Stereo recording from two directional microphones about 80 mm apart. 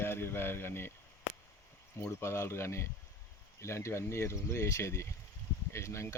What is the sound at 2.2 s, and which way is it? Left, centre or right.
Speech, left.